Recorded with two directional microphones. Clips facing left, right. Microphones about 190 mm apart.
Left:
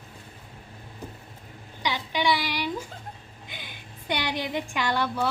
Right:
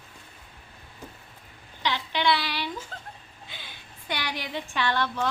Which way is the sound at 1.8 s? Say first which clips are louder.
Even; 10° left (ahead or behind).